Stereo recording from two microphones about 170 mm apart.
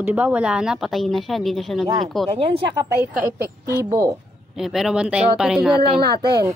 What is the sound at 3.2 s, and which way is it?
Speech, 20° right (ahead or behind).